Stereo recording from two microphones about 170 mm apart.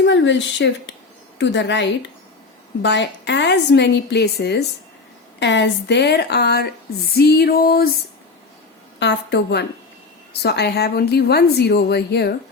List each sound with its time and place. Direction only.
0.0 s a woman's voice: 90° left; by 4.6 s 75° left (ahead or behind)
5.4 s a woman's voice: 90° left; by 6.7 s 70° left (ahead or behind)
7.1 s music: 70° left (ahead or behind)
9.0 s a woman's voice: 90° left